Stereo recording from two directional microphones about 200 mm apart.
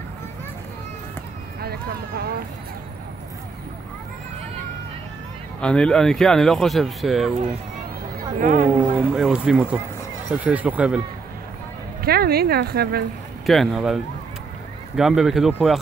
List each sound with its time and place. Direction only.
1.6 s speech: 50° right (ahead or behind)
5.6 s speech: 5° left (ahead or behind)
8.4 s speech: 45° right (ahead or behind)
9.1 s speech: 5° right (ahead or behind)
12.0 s speech: 50° right (ahead or behind)
13.5 s speech: centre (ahead or behind)
15.0 s speech: centre (ahead or behind)